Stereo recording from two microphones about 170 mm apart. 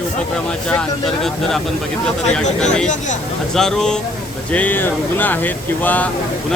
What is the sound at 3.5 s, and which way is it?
Speech, 5° left (ahead or behind).